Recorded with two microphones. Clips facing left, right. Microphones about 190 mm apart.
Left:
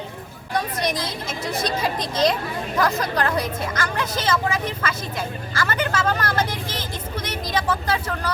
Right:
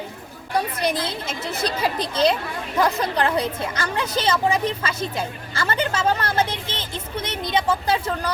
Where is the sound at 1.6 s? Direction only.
30° right (ahead or behind).